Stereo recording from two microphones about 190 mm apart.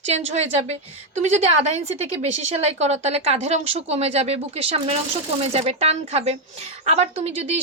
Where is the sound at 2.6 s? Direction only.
35° right (ahead or behind).